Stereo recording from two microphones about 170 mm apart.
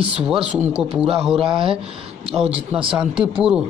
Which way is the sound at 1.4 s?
30° right (ahead or behind).